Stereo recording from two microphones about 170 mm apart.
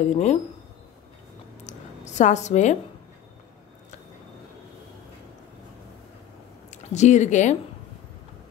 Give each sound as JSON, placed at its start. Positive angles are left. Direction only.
{"t": 0.0, "sound": "speech", "side_deg": 40}
{"t": 1.7, "sound": "a sound", "side_deg": 45}
{"t": 6.7, "sound": "speech", "side_deg": 45}